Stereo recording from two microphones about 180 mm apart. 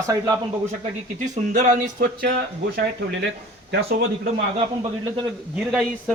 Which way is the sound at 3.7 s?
60° right (ahead or behind).